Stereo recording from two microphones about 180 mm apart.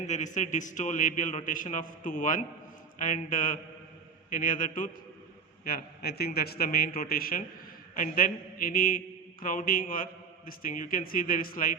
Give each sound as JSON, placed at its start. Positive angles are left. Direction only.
{"t": 0.1, "sound": "a man's voice", "side_deg": 40}